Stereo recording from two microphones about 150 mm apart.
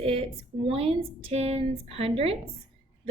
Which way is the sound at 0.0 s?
40° right (ahead or behind).